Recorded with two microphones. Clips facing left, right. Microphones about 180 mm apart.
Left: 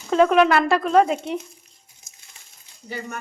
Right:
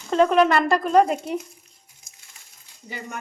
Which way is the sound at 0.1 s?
Centre (ahead or behind).